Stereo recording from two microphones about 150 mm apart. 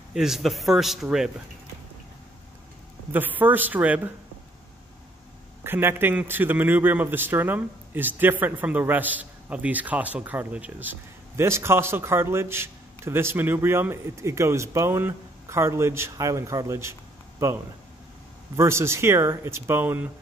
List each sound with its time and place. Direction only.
0.1 s a man's voice: 5° right (ahead or behind)
3.1 s a man's voice: 10° right (ahead or behind)
5.6 s a man's voice: 15° right (ahead or behind)
18.6 s a man's voice: 20° right (ahead or behind)